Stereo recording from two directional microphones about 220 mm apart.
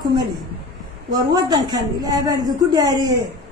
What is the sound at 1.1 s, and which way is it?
A man's voice, 20° right (ahead or behind).